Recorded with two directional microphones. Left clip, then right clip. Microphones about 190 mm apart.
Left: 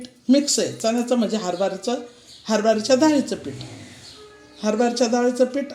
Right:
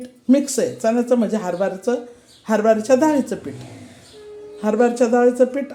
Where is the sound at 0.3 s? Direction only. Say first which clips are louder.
Right 1 dB; 10° right (ahead or behind).